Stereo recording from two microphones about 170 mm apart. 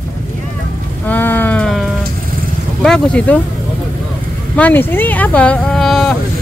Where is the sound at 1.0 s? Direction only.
10° left (ahead or behind).